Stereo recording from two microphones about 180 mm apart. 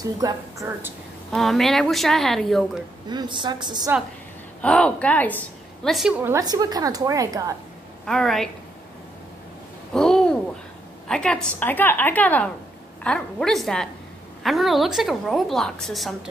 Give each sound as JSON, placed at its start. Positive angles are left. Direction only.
{"t": 0.0, "sound": "a woman's voice", "side_deg": -20}
{"t": 1.3, "sound": "a woman's voice", "side_deg": 0}
{"t": 3.1, "sound": "a woman's voice", "side_deg": -25}
{"t": 4.6, "sound": "a woman's voice", "side_deg": 5}
{"t": 5.9, "sound": "a woman's voice", "side_deg": 0}
{"t": 8.0, "sound": "a woman's voice", "side_deg": 0}
{"t": 9.9, "sound": "a sound", "side_deg": 5}
{"t": 11.1, "sound": "a woman's voice", "side_deg": 5}